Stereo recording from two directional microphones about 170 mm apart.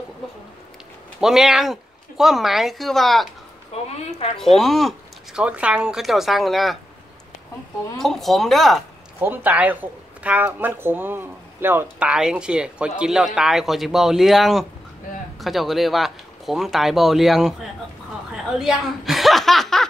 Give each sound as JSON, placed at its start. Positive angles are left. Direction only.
{"t": 1.2, "sound": "speech", "side_deg": -5}
{"t": 3.7, "sound": "speech", "side_deg": 40}
{"t": 4.4, "sound": "speech", "side_deg": 0}
{"t": 8.0, "sound": "speech", "side_deg": 0}
{"t": 9.2, "sound": "speech", "side_deg": -10}